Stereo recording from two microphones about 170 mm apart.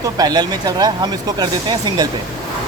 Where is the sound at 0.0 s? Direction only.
25° right (ahead or behind).